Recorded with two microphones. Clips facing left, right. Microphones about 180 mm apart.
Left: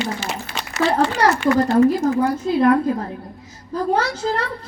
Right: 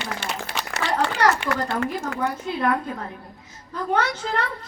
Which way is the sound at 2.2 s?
35° left (ahead or behind).